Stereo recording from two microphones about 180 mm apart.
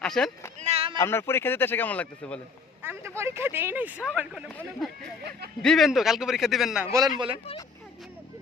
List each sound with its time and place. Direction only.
0.0 s a man's voice: 5° left (ahead or behind)
0.6 s a sound: 35° right (ahead or behind)
0.9 s speech: 15° left (ahead or behind)
2.8 s a man's voice: 15° right (ahead or behind)